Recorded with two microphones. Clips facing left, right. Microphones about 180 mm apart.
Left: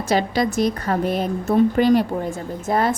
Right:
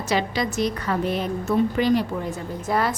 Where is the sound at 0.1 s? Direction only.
45° left (ahead or behind).